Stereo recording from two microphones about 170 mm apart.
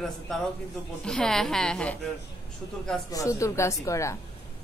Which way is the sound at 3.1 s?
20° left (ahead or behind).